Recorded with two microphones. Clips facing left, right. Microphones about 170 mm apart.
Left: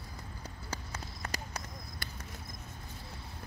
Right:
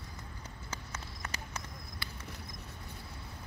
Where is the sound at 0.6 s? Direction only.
35° left (ahead or behind).